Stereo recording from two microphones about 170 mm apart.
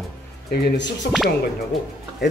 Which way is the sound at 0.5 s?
90° left.